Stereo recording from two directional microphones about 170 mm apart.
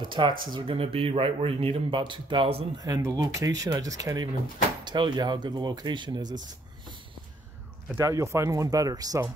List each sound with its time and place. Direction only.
0.1 s speech: 25° right (ahead or behind)
7.9 s speech: 15° right (ahead or behind)